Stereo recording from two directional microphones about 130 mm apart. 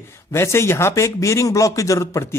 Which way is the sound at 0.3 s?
20° left (ahead or behind).